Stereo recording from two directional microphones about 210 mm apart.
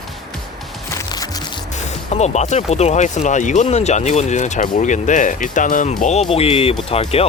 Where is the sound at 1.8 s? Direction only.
35° left (ahead or behind).